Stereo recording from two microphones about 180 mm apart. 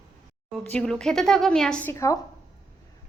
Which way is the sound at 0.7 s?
5° left (ahead or behind).